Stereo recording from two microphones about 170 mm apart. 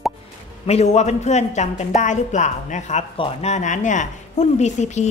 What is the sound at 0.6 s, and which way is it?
A woman's voice, 40° left (ahead or behind).